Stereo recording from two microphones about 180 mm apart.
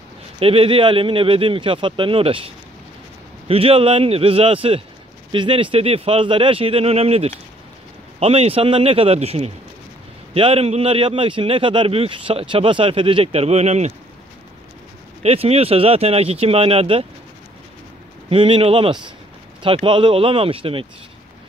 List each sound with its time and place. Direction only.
0.4 s a man's voice: 30° right (ahead or behind)
15.2 s a man's voice: 35° right (ahead or behind)
18.3 s a man's voice: 30° right (ahead or behind)